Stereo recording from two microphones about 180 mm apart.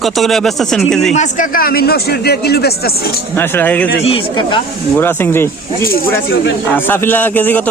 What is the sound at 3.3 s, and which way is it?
Speech, 10° left (ahead or behind).